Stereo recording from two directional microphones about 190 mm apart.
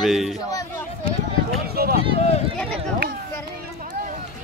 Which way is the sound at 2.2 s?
35° left (ahead or behind).